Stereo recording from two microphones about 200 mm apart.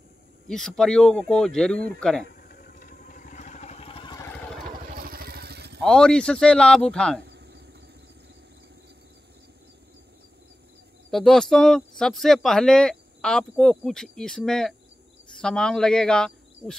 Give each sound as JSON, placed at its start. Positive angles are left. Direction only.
{"t": 0.5, "sound": "speech", "side_deg": 5}
{"t": 2.4, "sound": "vehicle", "side_deg": 45}
{"t": 4.8, "sound": "vehicle", "side_deg": -45}
{"t": 5.8, "sound": "speech", "side_deg": 5}
{"t": 7.2, "sound": "vehicle", "side_deg": -60}
{"t": 11.1, "sound": "speech", "side_deg": 0}